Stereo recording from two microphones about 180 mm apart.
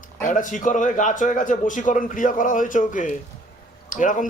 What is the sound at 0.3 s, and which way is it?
A man's voice, 45° left (ahead or behind).